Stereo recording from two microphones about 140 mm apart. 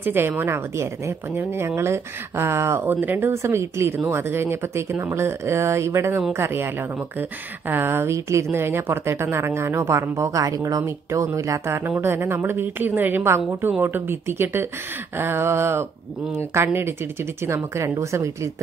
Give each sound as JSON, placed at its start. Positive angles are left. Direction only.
{"t": 0.0, "sound": "a woman's voice", "side_deg": -15}